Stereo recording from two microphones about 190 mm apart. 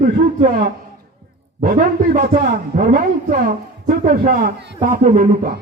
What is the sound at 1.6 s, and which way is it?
A man's voice, 50° right (ahead or behind).